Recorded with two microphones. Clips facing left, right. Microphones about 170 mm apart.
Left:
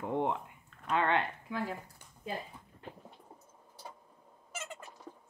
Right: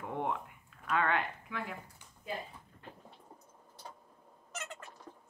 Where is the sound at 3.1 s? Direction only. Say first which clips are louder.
Left 1 dB; 5° left (ahead or behind).